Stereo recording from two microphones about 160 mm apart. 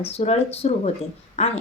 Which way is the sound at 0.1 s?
40° left (ahead or behind).